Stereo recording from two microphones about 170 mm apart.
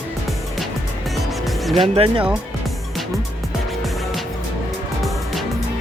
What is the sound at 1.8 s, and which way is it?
Speech, 30° right (ahead or behind).